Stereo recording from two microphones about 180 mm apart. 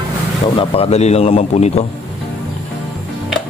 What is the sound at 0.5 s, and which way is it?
Speech, 30° left (ahead or behind).